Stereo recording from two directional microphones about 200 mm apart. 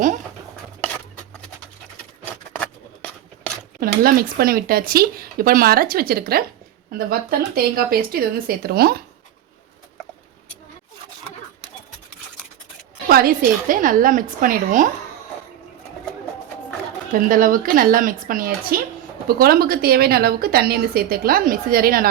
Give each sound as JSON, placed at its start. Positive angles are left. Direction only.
{"t": 2.6, "sound": "a sound", "side_deg": 5}
{"t": 3.8, "sound": "a woman's voice", "side_deg": -45}
{"t": 13.1, "sound": "a woman's voice", "side_deg": -45}
{"t": 17.1, "sound": "a woman's voice", "side_deg": -45}